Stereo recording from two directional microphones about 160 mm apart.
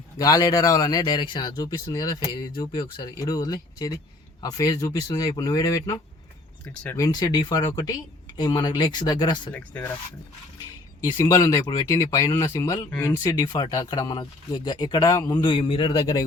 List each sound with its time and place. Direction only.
0.2 s speech: 25° left (ahead or behind)
9.5 s speech: 10° left (ahead or behind)
11.3 s speech: 20° left (ahead or behind)